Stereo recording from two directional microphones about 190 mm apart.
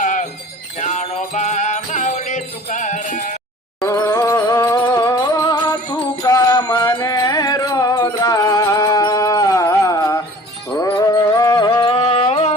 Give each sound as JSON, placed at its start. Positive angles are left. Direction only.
{"t": 0.0, "sound": "jingle bell", "side_deg": 40}
{"t": 0.8, "sound": "music", "side_deg": 40}
{"t": 3.8, "sound": "music", "side_deg": 15}